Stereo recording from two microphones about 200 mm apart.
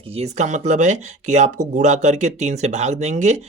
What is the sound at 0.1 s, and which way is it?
Speech, 35° right (ahead or behind).